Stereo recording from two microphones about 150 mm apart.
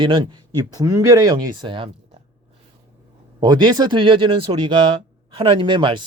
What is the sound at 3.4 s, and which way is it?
Speech, 30° right (ahead or behind).